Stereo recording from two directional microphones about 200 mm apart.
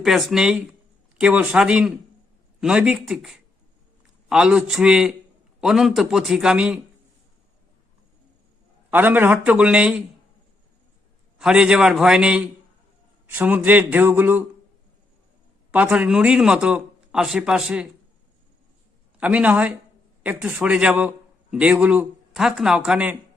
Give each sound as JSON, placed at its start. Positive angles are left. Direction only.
{"t": 0.0, "sound": "a man's voice", "side_deg": 0}
{"t": 8.9, "sound": "a man's voice", "side_deg": -10}
{"t": 11.3, "sound": "a man's voice", "side_deg": -5}
{"t": 15.7, "sound": "a man's voice", "side_deg": -5}
{"t": 19.2, "sound": "a man's voice", "side_deg": -5}